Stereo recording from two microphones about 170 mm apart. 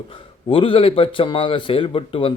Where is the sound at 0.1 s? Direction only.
30° left (ahead or behind).